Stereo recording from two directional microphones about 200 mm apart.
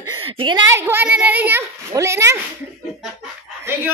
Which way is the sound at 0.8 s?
10° right (ahead or behind).